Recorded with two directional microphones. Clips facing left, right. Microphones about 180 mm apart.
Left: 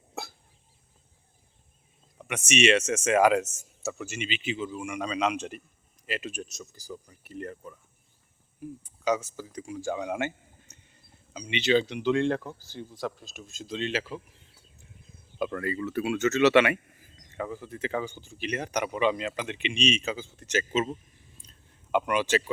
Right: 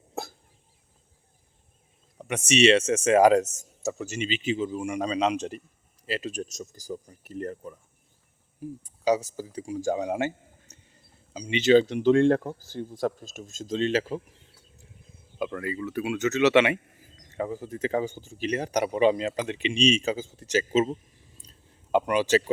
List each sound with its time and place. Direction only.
2.1 s speech: 35° right (ahead or behind)
8.8 s speech: 35° right (ahead or behind)
15.4 s speech: 10° right (ahead or behind)
17.3 s speech: 35° right (ahead or behind)
21.4 s a sound: 35° right (ahead or behind)
21.9 s speech: 35° right (ahead or behind)